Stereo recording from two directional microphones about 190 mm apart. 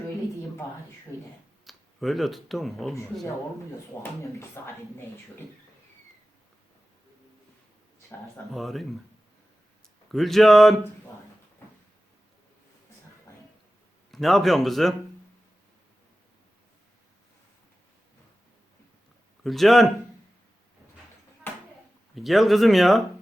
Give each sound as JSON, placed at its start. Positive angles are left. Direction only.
{"t": 1.6, "sound": "speech", "side_deg": 0}
{"t": 4.2, "sound": "speech", "side_deg": 15}
{"t": 8.5, "sound": "speech", "side_deg": 0}
{"t": 10.1, "sound": "speech", "side_deg": 0}
{"t": 14.1, "sound": "speech", "side_deg": 0}
{"t": 19.4, "sound": "speech", "side_deg": 0}
{"t": 21.5, "sound": "a sound", "side_deg": 10}
{"t": 22.1, "sound": "speech", "side_deg": 0}